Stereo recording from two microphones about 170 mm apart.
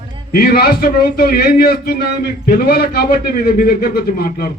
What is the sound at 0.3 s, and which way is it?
A man's voice, 65° left (ahead or behind).